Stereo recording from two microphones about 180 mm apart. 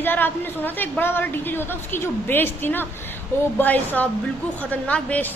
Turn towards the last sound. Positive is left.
turn(degrees=10)  # may be behind; listen again after turning